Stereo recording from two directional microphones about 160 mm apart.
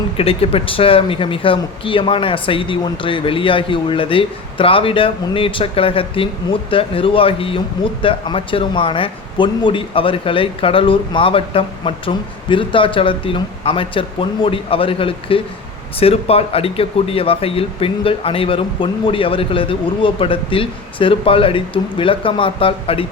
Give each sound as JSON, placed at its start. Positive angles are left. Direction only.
{"t": 0.2, "sound": "speech", "side_deg": 35}